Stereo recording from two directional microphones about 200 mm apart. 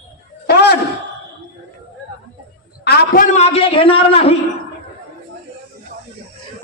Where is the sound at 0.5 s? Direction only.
55° left (ahead or behind).